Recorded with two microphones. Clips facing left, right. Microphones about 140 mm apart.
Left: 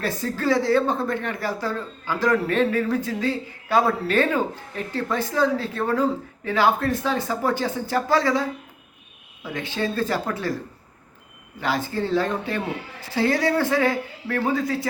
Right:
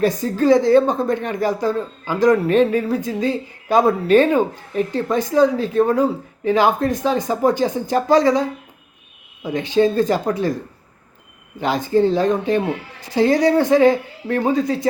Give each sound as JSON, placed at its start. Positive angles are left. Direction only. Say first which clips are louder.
{"t": 0.0, "sound": "speech", "louder": "right 8 dB", "side_deg": -15}
{"t": 11.6, "sound": "speech", "louder": "right 8 dB", "side_deg": -20}